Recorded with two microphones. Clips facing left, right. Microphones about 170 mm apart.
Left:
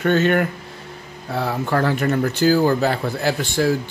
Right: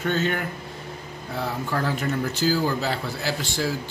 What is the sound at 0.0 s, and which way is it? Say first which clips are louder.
Speech: left 8 dB; 65° left (ahead or behind).